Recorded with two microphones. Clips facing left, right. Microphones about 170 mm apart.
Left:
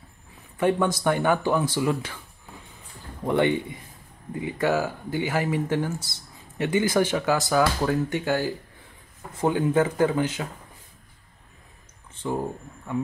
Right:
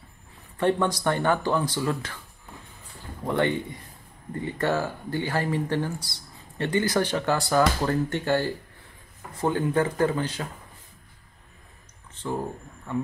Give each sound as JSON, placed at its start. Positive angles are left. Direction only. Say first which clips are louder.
{"t": 0.6, "sound": "speech", "louder": "left 1 dB", "side_deg": 10}
{"t": 3.3, "sound": "speech", "louder": "left 3 dB", "side_deg": 15}
{"t": 5.2, "sound": "speech", "louder": "left 2 dB", "side_deg": 20}